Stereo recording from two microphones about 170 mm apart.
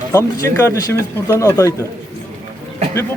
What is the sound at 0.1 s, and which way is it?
Speech, 15° left (ahead or behind).